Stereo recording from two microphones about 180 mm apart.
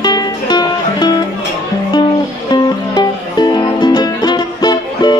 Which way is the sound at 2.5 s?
25° left (ahead or behind).